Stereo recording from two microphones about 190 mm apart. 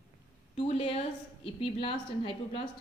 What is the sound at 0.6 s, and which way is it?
A woman's voice, 30° left (ahead or behind).